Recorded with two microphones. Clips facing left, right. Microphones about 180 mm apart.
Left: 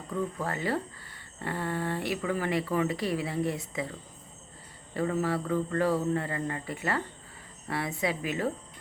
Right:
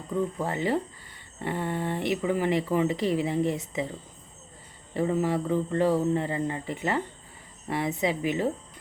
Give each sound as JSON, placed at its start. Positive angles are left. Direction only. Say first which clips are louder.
{"t": 0.1, "sound": "speech", "louder": "right 4 dB", "side_deg": -20}
{"t": 4.9, "sound": "speech", "louder": "right 3 dB", "side_deg": -20}